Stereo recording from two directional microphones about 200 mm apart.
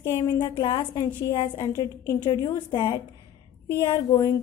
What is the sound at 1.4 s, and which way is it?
A woman's voice, 25° left (ahead or behind).